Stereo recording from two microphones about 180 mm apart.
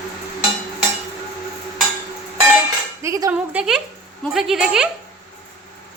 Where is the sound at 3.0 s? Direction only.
20° right (ahead or behind).